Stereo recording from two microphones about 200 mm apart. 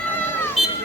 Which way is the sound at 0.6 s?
Centre (ahead or behind).